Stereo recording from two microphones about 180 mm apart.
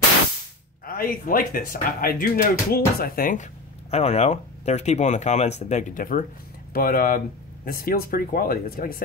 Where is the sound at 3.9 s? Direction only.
35° left (ahead or behind).